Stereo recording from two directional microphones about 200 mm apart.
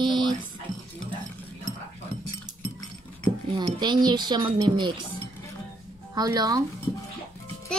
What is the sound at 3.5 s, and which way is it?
Speech, 20° right (ahead or behind).